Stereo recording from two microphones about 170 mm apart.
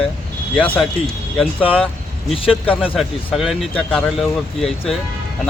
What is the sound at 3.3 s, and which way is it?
Speech, centre (ahead or behind).